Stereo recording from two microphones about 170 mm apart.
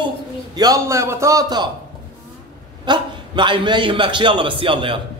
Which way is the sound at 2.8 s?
25° right (ahead or behind).